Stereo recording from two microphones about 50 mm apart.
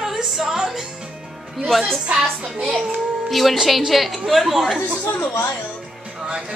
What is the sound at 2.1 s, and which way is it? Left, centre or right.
Speech, centre.